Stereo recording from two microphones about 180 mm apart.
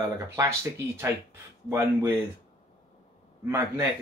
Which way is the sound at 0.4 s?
15° right (ahead or behind).